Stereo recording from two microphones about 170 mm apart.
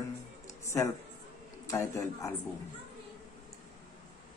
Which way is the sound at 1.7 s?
20° left (ahead or behind).